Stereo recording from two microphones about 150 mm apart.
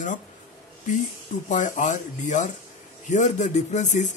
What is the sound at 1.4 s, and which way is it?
Speech, 55° left (ahead or behind).